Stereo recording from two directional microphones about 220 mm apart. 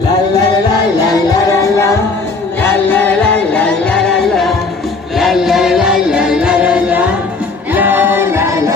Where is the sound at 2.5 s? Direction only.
5° left (ahead or behind).